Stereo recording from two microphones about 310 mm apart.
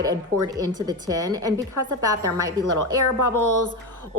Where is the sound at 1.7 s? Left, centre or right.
Right.